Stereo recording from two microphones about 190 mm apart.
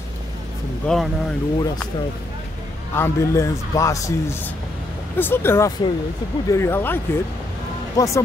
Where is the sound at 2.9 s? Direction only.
15° left (ahead or behind).